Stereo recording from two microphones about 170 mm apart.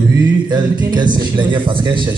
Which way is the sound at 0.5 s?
25° right (ahead or behind).